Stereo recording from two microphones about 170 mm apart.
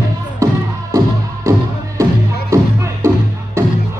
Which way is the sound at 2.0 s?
15° right (ahead or behind).